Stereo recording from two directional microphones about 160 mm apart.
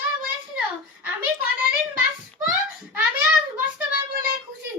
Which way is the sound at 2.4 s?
10° right (ahead or behind).